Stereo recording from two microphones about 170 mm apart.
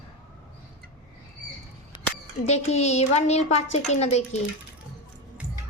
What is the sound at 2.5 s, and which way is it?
A child's voice, 40° left (ahead or behind).